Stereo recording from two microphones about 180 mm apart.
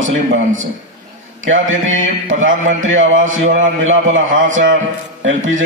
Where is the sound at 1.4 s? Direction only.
90° right.